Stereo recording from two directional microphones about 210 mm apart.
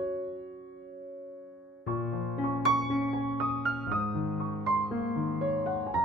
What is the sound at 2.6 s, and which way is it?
Music, centre (ahead or behind).